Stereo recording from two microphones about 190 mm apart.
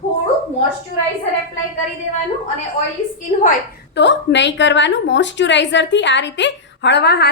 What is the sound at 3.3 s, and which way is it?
Speech, 45° left (ahead or behind).